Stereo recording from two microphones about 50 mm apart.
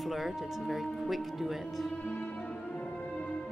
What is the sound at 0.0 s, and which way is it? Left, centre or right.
Speech, centre.